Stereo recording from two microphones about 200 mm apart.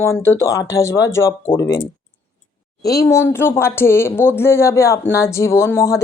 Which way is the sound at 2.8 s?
15° left (ahead or behind).